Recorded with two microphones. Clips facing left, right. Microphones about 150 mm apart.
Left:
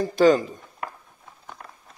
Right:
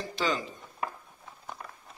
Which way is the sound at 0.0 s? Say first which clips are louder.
Left 13 dB; 45° left (ahead or behind).